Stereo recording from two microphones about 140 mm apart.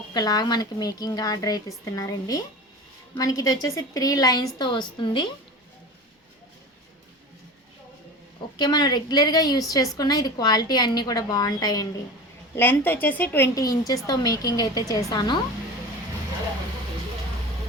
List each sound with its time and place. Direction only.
0.1 s a woman's voice: 30° left (ahead or behind)
8.5 s a woman's voice: 30° left (ahead or behind)
12.5 s a woman's voice: 15° left (ahead or behind)
13.6 s a woman's voice: 25° left (ahead or behind)